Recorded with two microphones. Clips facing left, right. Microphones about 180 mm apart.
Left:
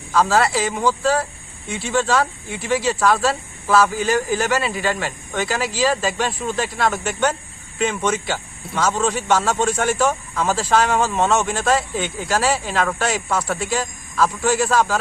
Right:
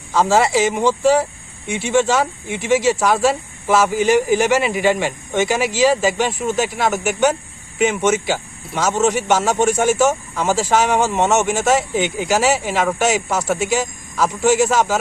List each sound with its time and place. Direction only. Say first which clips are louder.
0.1 s speech: right 2 dB; 20° right (ahead or behind)
11.4 s speech: right 3 dB; 10° right (ahead or behind)